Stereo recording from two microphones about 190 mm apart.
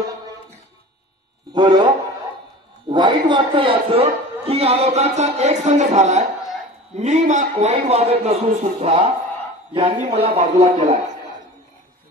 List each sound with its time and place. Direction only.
1.5 s a man's voice: 20° right (ahead or behind)
2.9 s a man's voice: 25° right (ahead or behind)